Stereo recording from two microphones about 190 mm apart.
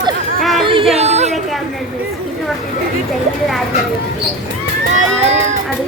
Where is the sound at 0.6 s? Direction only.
25° right (ahead or behind).